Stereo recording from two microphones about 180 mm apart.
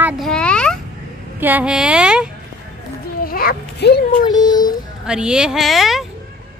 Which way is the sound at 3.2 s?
55° left (ahead or behind).